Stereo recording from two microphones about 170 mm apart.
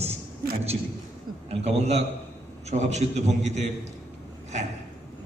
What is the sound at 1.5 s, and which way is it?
A man's voice, 40° right (ahead or behind).